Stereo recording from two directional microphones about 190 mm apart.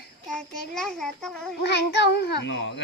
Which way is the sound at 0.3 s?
Centre (ahead or behind).